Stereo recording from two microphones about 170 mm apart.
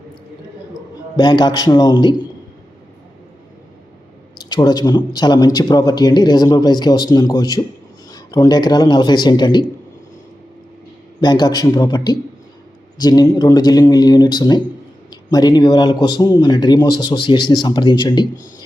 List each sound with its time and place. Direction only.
1.1 s speech: 25° left (ahead or behind)
4.4 s speech: 25° left (ahead or behind)
11.2 s speech: 25° left (ahead or behind)